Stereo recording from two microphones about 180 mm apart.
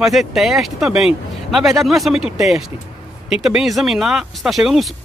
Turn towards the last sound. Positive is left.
turn(degrees=0)  # may be behind; listen again after turning